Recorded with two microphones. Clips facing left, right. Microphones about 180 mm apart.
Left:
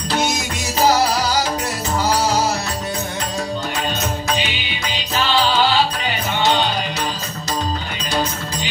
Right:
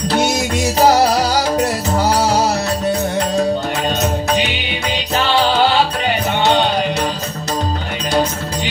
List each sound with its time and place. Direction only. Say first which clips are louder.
0.7 s music: right 3 dB; 60° right (ahead or behind)
5.1 s music: right 3 dB; 60° right (ahead or behind)